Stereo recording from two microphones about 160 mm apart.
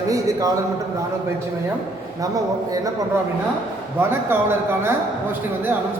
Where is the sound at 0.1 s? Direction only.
20° right (ahead or behind).